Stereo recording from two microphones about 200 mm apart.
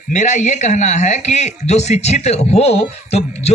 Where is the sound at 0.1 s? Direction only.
35° left (ahead or behind).